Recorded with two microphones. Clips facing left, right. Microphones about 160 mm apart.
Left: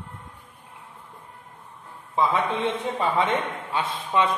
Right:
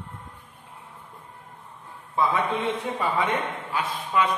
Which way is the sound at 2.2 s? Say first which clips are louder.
Left 1 dB; 25° left (ahead or behind).